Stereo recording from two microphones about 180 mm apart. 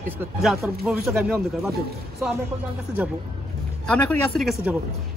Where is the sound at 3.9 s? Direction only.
10° left (ahead or behind).